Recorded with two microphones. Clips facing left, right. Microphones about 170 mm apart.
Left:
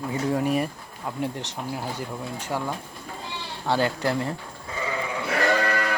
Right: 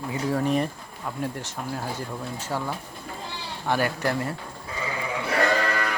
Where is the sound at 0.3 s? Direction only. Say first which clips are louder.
Right 1 dB; 15° left (ahead or behind).